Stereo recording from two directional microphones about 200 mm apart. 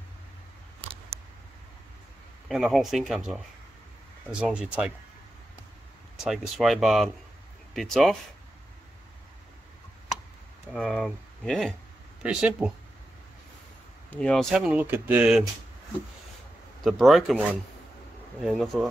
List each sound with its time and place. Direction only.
2.4 s speech: centre (ahead or behind)
6.2 s speech: centre (ahead or behind)
10.7 s speech: centre (ahead or behind)
14.1 s speech: 5° left (ahead or behind)
16.8 s speech: centre (ahead or behind)